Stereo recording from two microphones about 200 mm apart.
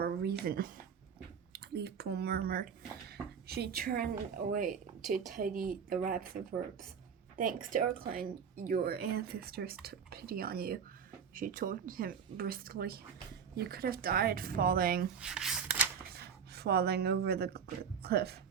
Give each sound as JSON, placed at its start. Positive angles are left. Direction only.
{"t": 0.0, "sound": "speech", "side_deg": -50}
{"t": 7.3, "sound": "speech", "side_deg": -45}
{"t": 15.2, "sound": "a sound", "side_deg": -5}
{"t": 16.5, "sound": "speech", "side_deg": -50}